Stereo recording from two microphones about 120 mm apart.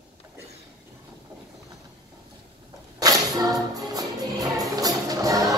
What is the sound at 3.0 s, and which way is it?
Music, 35° right (ahead or behind).